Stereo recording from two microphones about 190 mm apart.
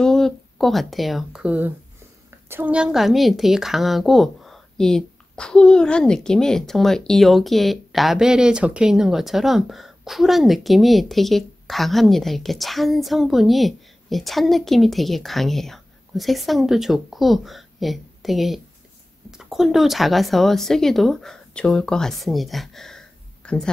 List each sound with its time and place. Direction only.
0.0 s a woman's voice: centre (ahead or behind)